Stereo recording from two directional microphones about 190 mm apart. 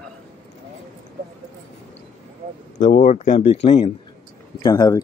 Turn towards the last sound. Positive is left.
turn(degrees=20)  # may be behind; listen again after turning